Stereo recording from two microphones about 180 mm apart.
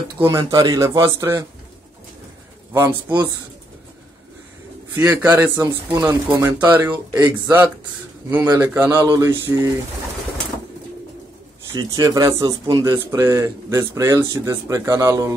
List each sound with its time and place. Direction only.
0.2 s speech: 15° right (ahead or behind)
2.7 s speech: 15° right (ahead or behind)
4.9 s speech: 10° right (ahead or behind)
11.7 s speech: 20° right (ahead or behind)